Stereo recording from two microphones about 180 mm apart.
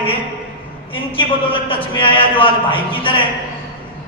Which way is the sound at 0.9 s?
30° left (ahead or behind).